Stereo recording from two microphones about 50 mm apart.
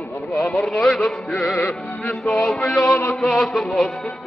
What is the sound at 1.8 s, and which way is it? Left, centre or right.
Music, left.